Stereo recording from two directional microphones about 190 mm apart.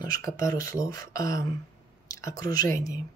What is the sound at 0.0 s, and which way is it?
Speech, 15° left (ahead or behind).